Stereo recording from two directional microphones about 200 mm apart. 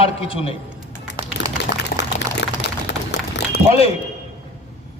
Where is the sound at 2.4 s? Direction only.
60° left (ahead or behind).